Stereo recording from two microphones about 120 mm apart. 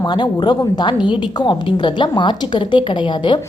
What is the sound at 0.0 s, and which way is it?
A woman's voice, 40° left (ahead or behind).